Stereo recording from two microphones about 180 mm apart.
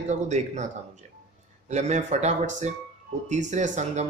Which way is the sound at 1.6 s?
40° right (ahead or behind).